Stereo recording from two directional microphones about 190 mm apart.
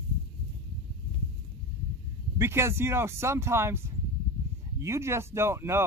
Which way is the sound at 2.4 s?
15° right (ahead or behind).